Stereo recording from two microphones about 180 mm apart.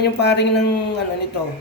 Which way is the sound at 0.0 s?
70° left (ahead or behind).